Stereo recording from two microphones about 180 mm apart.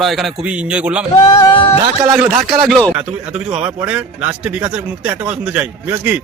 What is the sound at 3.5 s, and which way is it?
Speech, 5° right (ahead or behind).